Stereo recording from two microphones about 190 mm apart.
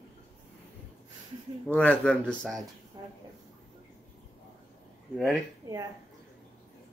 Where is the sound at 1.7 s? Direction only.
5° left (ahead or behind).